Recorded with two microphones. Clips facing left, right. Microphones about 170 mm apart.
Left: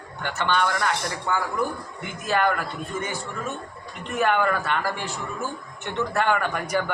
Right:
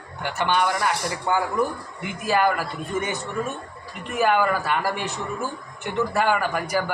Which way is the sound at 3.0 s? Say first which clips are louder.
Right 3 dB; 20° right (ahead or behind).